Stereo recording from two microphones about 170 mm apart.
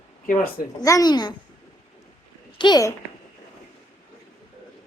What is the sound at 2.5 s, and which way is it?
Speech, 25° left (ahead or behind).